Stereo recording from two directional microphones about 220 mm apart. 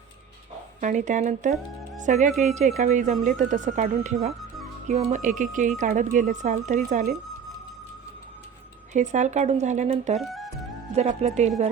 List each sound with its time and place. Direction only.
0.8 s speech: 35° right (ahead or behind)
4.4 s music: centre (ahead or behind)
4.9 s speech: 30° right (ahead or behind)
8.9 s speech: 35° right (ahead or behind)
10.2 s speech: centre (ahead or behind)
10.9 s speech: 30° right (ahead or behind)